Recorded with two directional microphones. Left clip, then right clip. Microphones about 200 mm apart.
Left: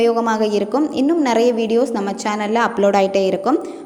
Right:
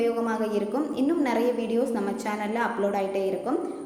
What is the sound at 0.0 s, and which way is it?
A woman's voice, 40° left (ahead or behind).